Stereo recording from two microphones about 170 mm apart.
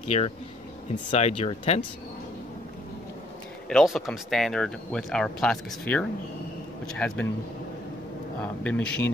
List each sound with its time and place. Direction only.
0.1 s speech: 40° left (ahead or behind)
3.6 s speech: centre (ahead or behind)
8.6 s speech: 5° left (ahead or behind)